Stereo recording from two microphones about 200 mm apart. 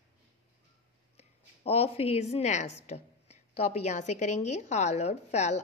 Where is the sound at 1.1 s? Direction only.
30° left (ahead or behind).